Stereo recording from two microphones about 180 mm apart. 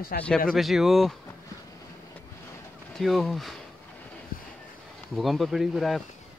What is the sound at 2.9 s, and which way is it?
Speech, centre (ahead or behind).